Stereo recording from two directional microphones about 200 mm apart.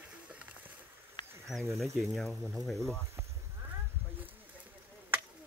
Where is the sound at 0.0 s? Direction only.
5° right (ahead or behind).